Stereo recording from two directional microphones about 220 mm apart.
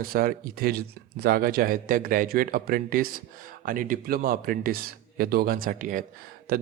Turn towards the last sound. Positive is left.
turn(degrees=-45)  # may be behind; listen again after turning